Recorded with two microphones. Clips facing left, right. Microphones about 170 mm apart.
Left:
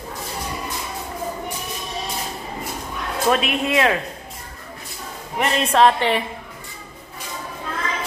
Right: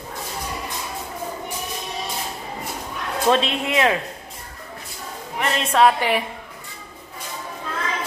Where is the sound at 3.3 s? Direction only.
25° right (ahead or behind).